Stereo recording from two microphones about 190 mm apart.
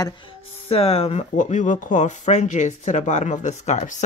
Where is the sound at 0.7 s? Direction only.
30° left (ahead or behind).